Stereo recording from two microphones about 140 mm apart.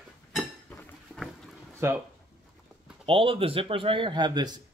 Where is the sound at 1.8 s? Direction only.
20° right (ahead or behind).